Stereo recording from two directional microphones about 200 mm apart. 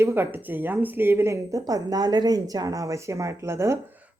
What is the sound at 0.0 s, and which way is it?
A woman's voice, 10° right (ahead or behind).